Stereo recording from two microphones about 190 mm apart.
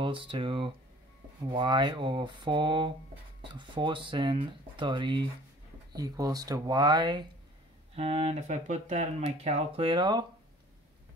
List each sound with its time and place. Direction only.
0.0 s speech: 25° right (ahead or behind)